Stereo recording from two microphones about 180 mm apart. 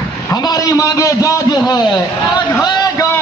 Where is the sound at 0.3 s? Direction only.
20° left (ahead or behind).